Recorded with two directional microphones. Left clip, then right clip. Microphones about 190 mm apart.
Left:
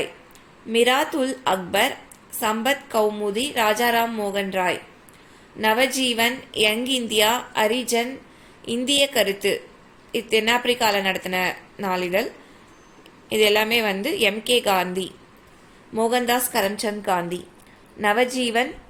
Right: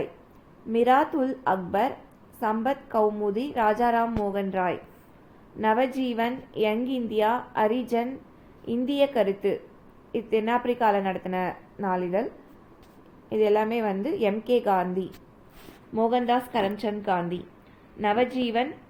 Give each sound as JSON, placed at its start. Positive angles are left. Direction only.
{"t": 0.7, "sound": "a woman's voice", "side_deg": 15}
{"t": 13.2, "sound": "a woman's voice", "side_deg": 10}